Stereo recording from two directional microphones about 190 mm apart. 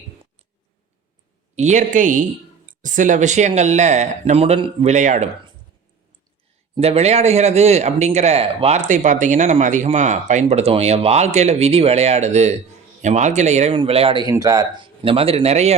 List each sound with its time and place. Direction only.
1.5 s speech: 40° right (ahead or behind)
6.7 s speech: 35° right (ahead or behind)